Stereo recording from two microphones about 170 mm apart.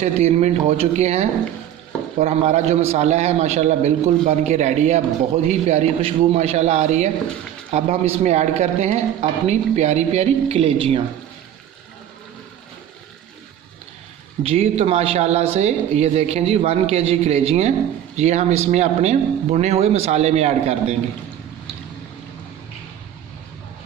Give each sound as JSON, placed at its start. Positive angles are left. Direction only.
{"t": 0.0, "sound": "a man's voice", "side_deg": -40}
{"t": 14.4, "sound": "a man's voice", "side_deg": -35}